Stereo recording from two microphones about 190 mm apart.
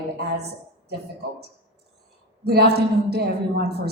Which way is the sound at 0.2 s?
55° right (ahead or behind).